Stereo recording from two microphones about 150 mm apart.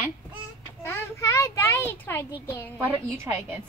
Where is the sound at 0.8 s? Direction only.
20° left (ahead or behind).